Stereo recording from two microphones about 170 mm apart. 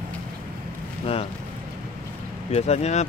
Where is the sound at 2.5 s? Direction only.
40° left (ahead or behind).